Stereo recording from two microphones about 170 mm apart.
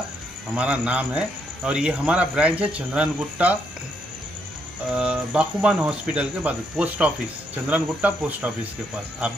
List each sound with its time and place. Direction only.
0.6 s speech: 5° right (ahead or behind)
4.9 s speech: 5° right (ahead or behind)